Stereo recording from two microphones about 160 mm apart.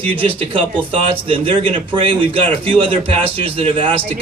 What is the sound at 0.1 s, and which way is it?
A man's voice, 35° right (ahead or behind).